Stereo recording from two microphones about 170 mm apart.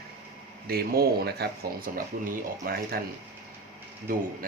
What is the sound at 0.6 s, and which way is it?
Speech, 65° right (ahead or behind).